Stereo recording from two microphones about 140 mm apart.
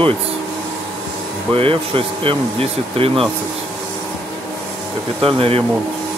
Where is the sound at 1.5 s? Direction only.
40° right (ahead or behind).